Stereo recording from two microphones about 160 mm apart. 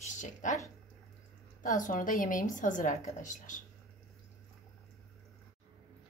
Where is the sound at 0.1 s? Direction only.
50° left (ahead or behind).